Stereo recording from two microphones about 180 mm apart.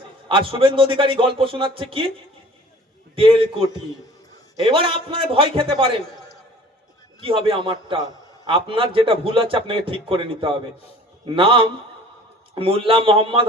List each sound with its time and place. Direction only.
0.3 s a man's voice: 30° right (ahead or behind)
3.2 s a man's voice: 30° right (ahead or behind)
7.3 s a man's voice: 30° right (ahead or behind)
8.0 s a man's voice: 20° left (ahead or behind)
8.4 s a man's voice: 30° right (ahead or behind)